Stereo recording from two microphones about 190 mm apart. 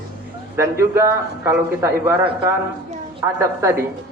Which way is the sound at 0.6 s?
15° right (ahead or behind).